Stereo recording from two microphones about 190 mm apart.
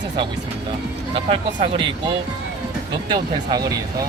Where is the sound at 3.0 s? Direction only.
20° right (ahead or behind).